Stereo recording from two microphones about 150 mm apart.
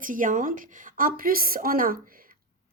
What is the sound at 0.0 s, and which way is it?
Speech, 60° right (ahead or behind).